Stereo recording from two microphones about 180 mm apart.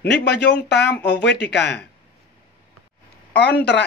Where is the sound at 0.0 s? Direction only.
70° left (ahead or behind).